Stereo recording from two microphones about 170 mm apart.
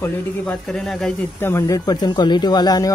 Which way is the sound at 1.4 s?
15° left (ahead or behind).